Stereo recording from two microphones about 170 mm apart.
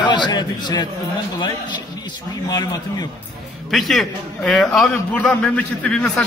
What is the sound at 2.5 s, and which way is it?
Speech, 20° left (ahead or behind).